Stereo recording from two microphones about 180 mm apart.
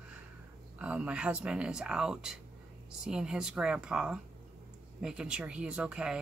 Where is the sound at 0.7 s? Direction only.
10° right (ahead or behind).